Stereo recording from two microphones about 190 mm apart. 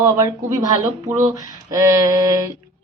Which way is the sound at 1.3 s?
15° right (ahead or behind).